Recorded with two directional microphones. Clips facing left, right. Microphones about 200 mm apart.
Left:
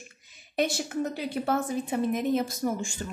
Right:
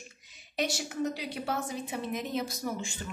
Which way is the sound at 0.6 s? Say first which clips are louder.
Left 4 dB; 50° left (ahead or behind).